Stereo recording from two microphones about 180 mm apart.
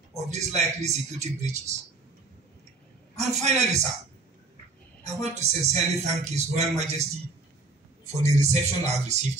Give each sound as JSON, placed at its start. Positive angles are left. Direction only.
{"t": 0.3, "sound": "a man's voice", "side_deg": -40}
{"t": 3.2, "sound": "a man's voice", "side_deg": -40}
{"t": 5.0, "sound": "a man's voice", "side_deg": -40}
{"t": 8.2, "sound": "a man's voice", "side_deg": -40}